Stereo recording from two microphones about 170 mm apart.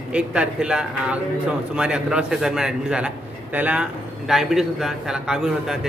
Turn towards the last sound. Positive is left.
turn(degrees=-5)  # may be behind; listen again after turning